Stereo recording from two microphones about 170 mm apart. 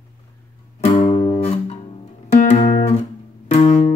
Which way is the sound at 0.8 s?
40° left (ahead or behind).